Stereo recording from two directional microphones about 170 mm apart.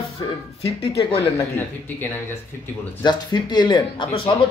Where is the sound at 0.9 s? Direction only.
20° left (ahead or behind).